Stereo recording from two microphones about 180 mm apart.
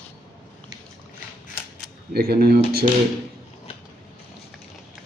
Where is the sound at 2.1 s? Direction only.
60° right (ahead or behind).